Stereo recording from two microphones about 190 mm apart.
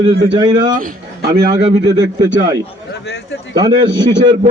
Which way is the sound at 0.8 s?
50° right (ahead or behind).